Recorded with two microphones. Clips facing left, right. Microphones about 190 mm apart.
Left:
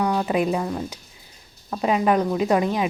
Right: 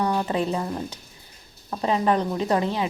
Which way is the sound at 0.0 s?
10° left (ahead or behind).